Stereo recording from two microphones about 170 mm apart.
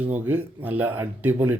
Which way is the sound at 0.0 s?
10° right (ahead or behind).